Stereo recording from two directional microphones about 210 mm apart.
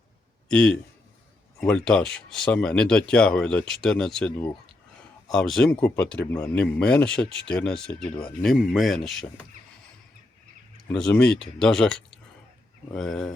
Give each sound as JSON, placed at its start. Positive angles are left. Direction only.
{"t": 0.4, "sound": "a man's voice", "side_deg": 5}
{"t": 10.8, "sound": "speech", "side_deg": 5}
{"t": 13.0, "sound": "speech", "side_deg": 0}